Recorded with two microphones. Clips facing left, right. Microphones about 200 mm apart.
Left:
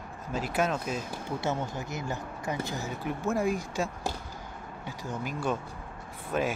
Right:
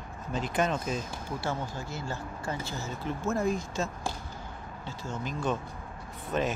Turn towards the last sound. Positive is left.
turn(degrees=5)  # may be behind; listen again after turning